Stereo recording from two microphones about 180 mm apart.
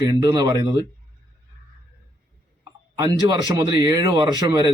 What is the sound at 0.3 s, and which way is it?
Speech, 20° right (ahead or behind).